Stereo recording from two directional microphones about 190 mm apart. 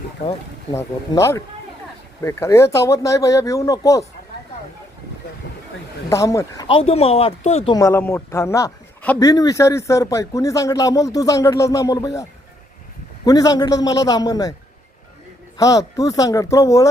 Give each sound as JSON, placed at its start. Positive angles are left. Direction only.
{"t": 0.7, "sound": "a man's voice", "side_deg": 15}
{"t": 6.1, "sound": "a man's voice", "side_deg": 15}
{"t": 6.7, "sound": "speech", "side_deg": 30}
{"t": 7.8, "sound": "a man's voice", "side_deg": 15}
{"t": 13.2, "sound": "a man's voice", "side_deg": 20}
{"t": 15.5, "sound": "a man's voice", "side_deg": 20}